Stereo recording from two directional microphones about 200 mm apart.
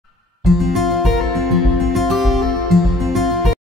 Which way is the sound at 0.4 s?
Centre (ahead or behind).